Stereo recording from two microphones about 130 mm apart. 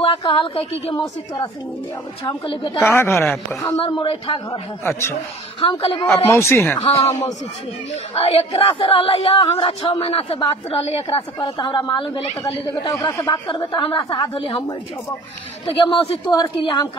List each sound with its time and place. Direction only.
0.0 s a woman's voice: 40° left (ahead or behind)
0.9 s a woman's voice: 30° left (ahead or behind)
2.8 s speech: 20° left (ahead or behind)
3.8 s speech: 40° left (ahead or behind)
5.8 s speech: 45° left (ahead or behind)
6.0 s speech: 20° left (ahead or behind)
8.1 s a woman's voice: 50° left (ahead or behind)
13.5 s a woman's voice: 40° left (ahead or behind)
15.6 s speech: 40° left (ahead or behind)
16.3 s a woman's voice: 35° left (ahead or behind)